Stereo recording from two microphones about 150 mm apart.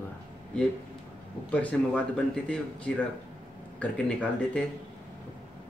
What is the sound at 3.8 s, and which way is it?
Speech, 10° left (ahead or behind).